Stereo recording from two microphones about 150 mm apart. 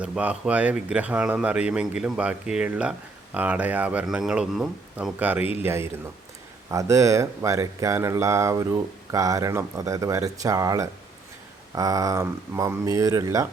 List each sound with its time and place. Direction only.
0.0 s speech: 10° right (ahead or behind)